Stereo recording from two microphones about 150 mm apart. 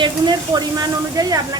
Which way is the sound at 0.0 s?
25° right (ahead or behind).